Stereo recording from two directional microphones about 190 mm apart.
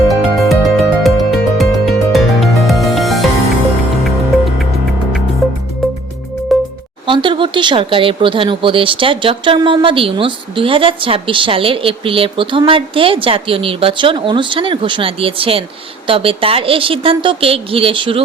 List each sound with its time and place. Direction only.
0.1 s music: centre (ahead or behind)
6.5 s music: centre (ahead or behind)
7.1 s speech: 25° right (ahead or behind)